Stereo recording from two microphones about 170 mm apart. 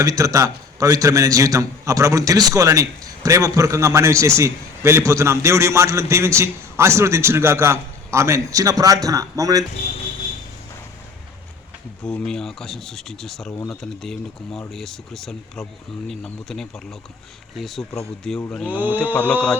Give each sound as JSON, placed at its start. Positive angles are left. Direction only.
{"t": 0.0, "sound": "a man's voice", "side_deg": -20}
{"t": 12.0, "sound": "speech", "side_deg": 5}
{"t": 18.5, "sound": "mantra", "side_deg": 10}